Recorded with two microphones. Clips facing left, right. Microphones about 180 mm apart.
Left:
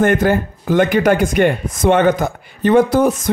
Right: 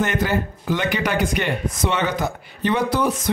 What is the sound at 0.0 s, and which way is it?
Speech, 50° left (ahead or behind).